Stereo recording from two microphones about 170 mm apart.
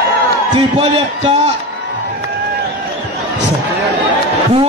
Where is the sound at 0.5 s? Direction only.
35° right (ahead or behind).